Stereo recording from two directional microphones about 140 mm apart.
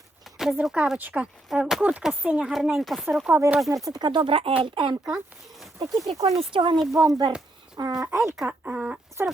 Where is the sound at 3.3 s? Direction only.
15° right (ahead or behind).